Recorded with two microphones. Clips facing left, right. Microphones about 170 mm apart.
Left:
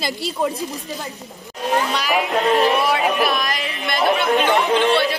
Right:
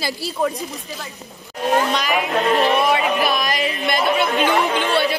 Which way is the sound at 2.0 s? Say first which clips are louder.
Even; centre (ahead or behind).